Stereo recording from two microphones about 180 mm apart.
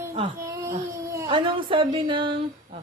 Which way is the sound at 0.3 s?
15° right (ahead or behind).